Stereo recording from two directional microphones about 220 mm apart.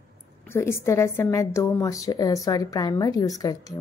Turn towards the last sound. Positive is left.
turn(degrees=15)  # may be behind; listen again after turning